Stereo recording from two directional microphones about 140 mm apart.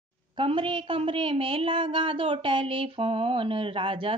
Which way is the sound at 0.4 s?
40° right (ahead or behind).